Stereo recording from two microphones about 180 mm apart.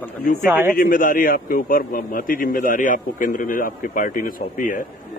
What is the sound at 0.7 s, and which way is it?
A man's voice, 50° left (ahead or behind).